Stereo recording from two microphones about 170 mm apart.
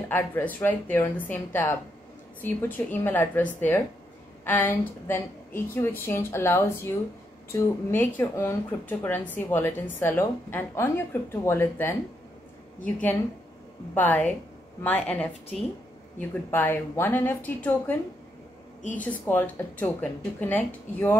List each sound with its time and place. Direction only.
0.1 s a woman's voice: 10° left (ahead or behind)
18.9 s a woman's voice: 10° left (ahead or behind)